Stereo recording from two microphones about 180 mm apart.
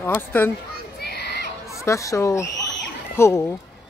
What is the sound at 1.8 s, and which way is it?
Speech, 15° left (ahead or behind).